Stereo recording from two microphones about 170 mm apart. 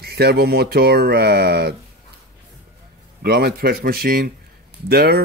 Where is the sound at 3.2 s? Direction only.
65° right (ahead or behind).